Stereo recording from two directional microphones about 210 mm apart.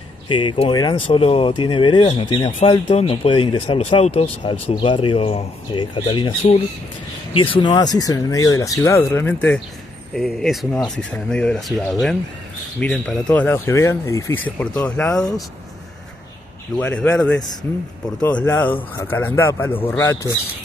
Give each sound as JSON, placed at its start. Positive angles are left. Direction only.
{"t": 0.3, "sound": "speech", "side_deg": 25}
{"t": 16.7, "sound": "speech", "side_deg": 5}